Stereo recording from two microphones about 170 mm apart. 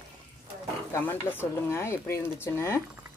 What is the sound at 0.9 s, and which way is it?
Speech, 15° left (ahead or behind).